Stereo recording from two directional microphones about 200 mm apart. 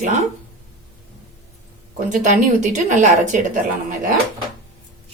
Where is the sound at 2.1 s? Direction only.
40° right (ahead or behind).